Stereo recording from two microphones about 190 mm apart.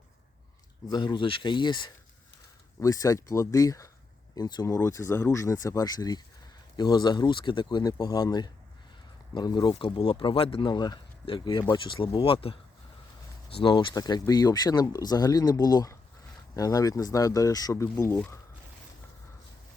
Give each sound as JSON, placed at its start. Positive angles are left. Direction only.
{"t": 0.9, "sound": "speech", "side_deg": 25}